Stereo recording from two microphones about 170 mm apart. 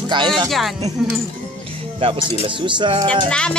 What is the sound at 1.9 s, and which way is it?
Speech, 35° right (ahead or behind).